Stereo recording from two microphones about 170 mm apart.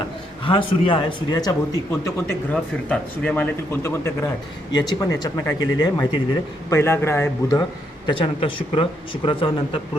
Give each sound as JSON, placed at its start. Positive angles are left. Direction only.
{"t": 0.4, "sound": "speech", "side_deg": 30}
{"t": 8.0, "sound": "speech", "side_deg": 30}